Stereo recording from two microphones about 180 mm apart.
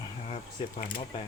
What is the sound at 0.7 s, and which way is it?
Speech, 50° left (ahead or behind).